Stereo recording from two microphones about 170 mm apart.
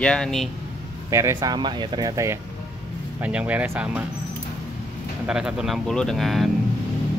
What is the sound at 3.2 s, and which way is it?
Speech, 5° right (ahead or behind).